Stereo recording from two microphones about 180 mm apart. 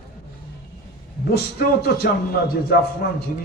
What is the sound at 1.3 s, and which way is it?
A man's voice, 60° left (ahead or behind).